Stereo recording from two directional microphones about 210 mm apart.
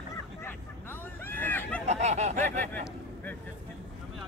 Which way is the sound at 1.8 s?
30° right (ahead or behind).